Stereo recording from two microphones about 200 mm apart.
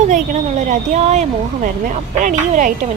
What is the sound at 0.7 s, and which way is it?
A woman's voice, 35° right (ahead or behind).